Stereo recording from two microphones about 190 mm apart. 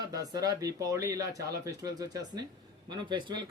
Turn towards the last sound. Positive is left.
turn(degrees=-25)  # may be behind; listen again after turning